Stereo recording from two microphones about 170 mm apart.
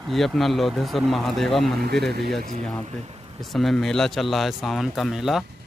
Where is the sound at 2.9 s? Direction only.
35° right (ahead or behind).